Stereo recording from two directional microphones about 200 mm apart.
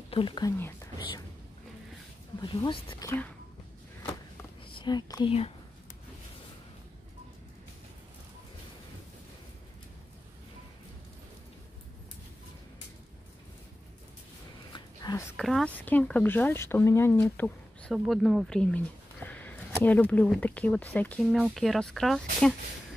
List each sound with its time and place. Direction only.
0.1 s speech: 25° left (ahead or behind)
2.4 s speech: 25° left (ahead or behind)
4.7 s speech: 20° left (ahead or behind)
14.7 s a sound: 20° left (ahead or behind)
15.3 s speech: centre (ahead or behind)
17.9 s speech: centre (ahead or behind)